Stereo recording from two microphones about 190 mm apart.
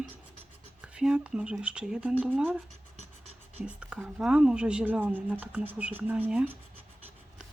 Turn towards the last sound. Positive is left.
turn(degrees=-10)  # may be behind; listen again after turning